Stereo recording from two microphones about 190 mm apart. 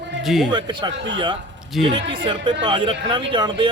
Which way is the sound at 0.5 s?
25° right (ahead or behind).